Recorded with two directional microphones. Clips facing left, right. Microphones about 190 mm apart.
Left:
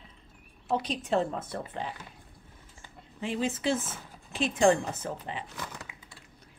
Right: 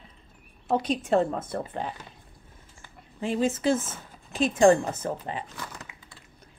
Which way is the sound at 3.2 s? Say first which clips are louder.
Right 5 dB; 45° right (ahead or behind).